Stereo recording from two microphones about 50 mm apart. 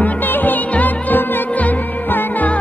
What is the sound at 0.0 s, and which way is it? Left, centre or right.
Music, left.